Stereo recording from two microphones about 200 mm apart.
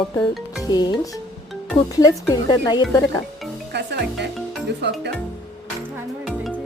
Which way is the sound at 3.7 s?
55° right (ahead or behind).